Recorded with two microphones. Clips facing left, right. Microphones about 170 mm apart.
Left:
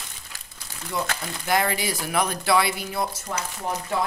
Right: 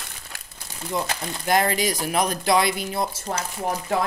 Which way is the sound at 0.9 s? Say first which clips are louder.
Right 2 dB; 20° right (ahead or behind).